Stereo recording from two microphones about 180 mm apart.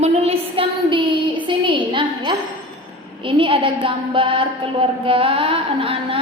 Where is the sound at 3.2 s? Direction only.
30° right (ahead or behind).